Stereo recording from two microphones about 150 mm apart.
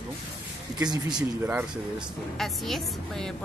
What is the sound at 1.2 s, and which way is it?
Speech, 10° right (ahead or behind).